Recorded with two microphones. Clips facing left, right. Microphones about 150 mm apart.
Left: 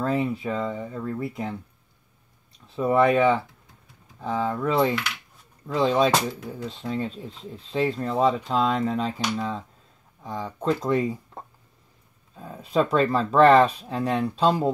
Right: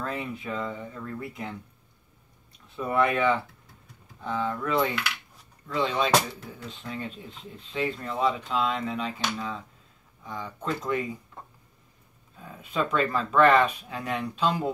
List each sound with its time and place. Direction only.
0.0 s speech: 35° left (ahead or behind)
2.7 s speech: 30° left (ahead or behind)